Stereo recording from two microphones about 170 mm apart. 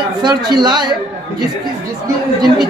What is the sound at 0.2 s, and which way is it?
Speech, 25° right (ahead or behind).